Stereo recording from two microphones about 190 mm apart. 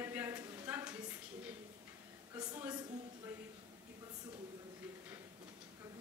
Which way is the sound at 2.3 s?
20° right (ahead or behind).